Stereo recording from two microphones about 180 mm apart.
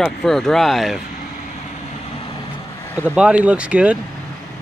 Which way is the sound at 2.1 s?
30° left (ahead or behind).